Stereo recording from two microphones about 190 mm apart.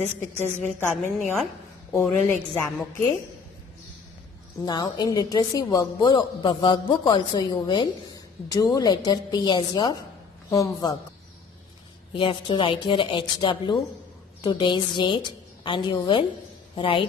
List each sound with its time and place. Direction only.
0.7 s a woman's voice: 5° left (ahead or behind)
4.6 s a woman's voice: 20° left (ahead or behind)
12.1 s a woman's voice: 25° left (ahead or behind)